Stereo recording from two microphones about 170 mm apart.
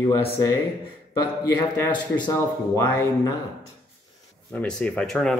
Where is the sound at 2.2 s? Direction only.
20° left (ahead or behind).